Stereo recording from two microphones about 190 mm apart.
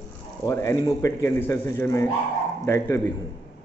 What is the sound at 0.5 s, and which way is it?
A man's voice, 15° left (ahead or behind).